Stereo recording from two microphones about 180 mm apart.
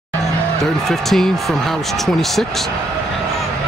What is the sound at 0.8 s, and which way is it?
Speech, centre (ahead or behind).